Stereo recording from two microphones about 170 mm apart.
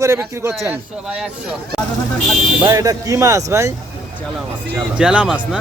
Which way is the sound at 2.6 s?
20° right (ahead or behind).